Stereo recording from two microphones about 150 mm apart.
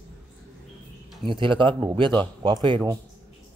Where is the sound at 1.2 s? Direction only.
35° right (ahead or behind).